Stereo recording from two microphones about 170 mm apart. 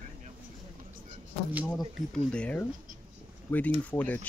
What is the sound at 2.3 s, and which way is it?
Speech, 10° left (ahead or behind).